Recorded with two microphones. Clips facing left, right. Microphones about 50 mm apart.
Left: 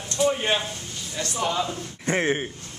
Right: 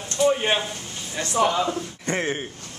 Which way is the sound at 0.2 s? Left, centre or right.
Centre.